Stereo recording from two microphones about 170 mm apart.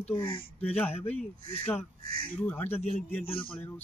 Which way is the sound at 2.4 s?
10° left (ahead or behind).